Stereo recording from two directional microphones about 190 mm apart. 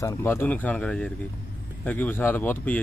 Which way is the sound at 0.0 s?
10° left (ahead or behind).